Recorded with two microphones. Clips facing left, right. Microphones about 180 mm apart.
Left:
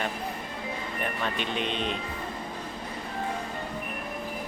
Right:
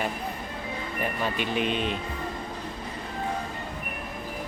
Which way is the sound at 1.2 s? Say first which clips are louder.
Right 4 dB; 5° right (ahead or behind).